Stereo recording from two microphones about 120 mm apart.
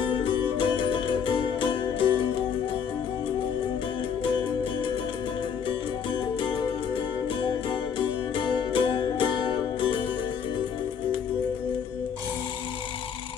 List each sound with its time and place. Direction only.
0.0 s music: 45° left (ahead or behind)
6.1 s music: 40° left (ahead or behind)